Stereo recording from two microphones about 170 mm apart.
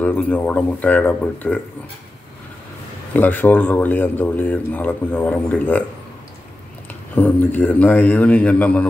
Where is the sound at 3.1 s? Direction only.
10° left (ahead or behind).